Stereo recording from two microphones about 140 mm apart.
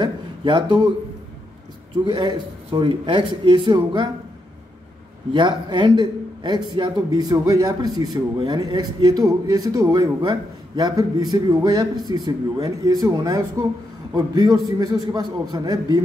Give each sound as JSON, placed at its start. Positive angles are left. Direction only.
{"t": 0.0, "sound": "speech", "side_deg": -35}
{"t": 2.0, "sound": "a man's voice", "side_deg": -30}
{"t": 5.3, "sound": "a man's voice", "side_deg": -30}